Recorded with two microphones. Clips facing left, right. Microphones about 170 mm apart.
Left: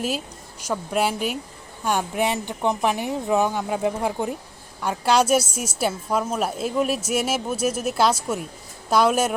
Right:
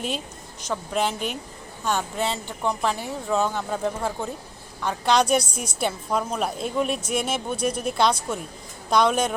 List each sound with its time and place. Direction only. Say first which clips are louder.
0.6 s a woman's voice: left 2 dB; 10° left (ahead or behind)